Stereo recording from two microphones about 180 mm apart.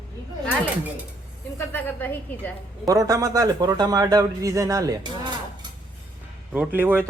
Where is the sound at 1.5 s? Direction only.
10° left (ahead or behind).